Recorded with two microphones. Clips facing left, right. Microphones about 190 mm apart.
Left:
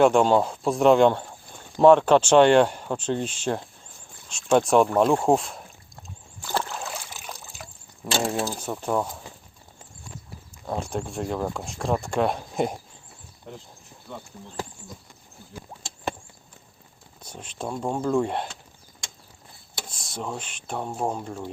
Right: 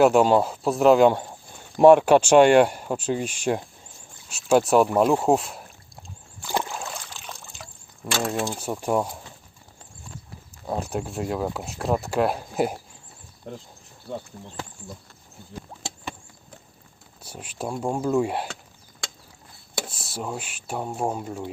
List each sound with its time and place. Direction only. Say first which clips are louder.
0.0 s speech: right 1 dB; 5° right (ahead or behind)
6.5 s rowboat: right 1 dB; 15° right (ahead or behind)
6.7 s boat: even; 5° left (ahead or behind)
8.0 s speech: left 2 dB; centre (ahead or behind)
8.5 s speech: right 2 dB; 10° right (ahead or behind)
10.7 s speech: right 1 dB; 10° right (ahead or behind)
14.1 s speech: right 6 dB; 40° right (ahead or behind)
17.2 s speech: right 1 dB; 10° right (ahead or behind)
19.9 s speech: left 3 dB; 5° right (ahead or behind)